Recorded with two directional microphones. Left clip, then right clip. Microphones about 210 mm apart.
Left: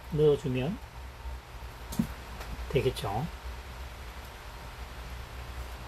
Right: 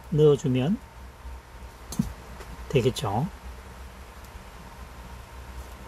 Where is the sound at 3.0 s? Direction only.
55° right (ahead or behind).